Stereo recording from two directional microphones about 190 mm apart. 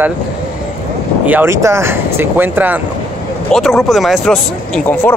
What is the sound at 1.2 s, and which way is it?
Speech, 10° right (ahead or behind).